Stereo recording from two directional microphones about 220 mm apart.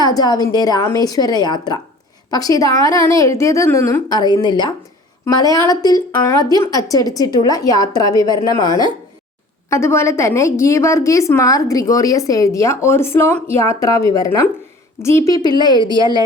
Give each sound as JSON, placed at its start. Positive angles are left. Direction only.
{"t": 0.0, "sound": "a woman's voice", "side_deg": 15}